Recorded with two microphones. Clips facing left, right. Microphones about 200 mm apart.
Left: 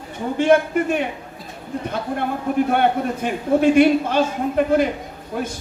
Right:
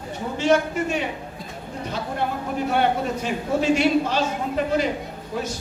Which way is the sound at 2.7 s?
55° left (ahead or behind).